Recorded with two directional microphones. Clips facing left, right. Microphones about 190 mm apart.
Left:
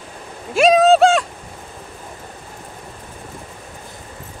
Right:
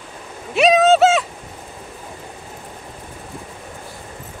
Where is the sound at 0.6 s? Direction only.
Centre (ahead or behind).